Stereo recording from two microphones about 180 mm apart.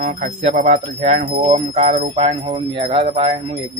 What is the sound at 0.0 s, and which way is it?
Speech, 45° right (ahead or behind).